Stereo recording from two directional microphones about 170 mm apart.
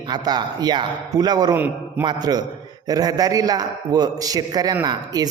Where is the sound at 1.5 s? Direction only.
10° right (ahead or behind).